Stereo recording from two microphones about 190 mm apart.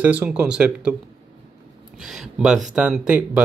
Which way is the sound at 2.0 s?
Centre (ahead or behind).